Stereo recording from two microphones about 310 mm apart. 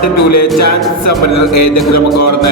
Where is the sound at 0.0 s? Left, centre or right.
Left.